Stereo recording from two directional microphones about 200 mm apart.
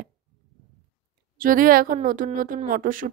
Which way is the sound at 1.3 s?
45° right (ahead or behind).